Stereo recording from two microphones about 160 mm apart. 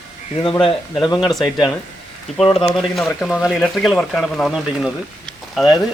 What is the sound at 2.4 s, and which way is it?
Speech, 35° left (ahead or behind).